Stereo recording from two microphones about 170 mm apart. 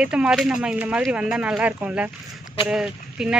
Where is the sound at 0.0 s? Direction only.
5° right (ahead or behind).